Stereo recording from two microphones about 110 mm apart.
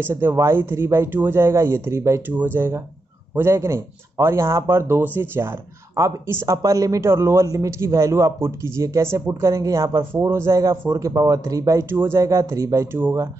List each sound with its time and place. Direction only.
0.0 s a man's voice: 20° right (ahead or behind)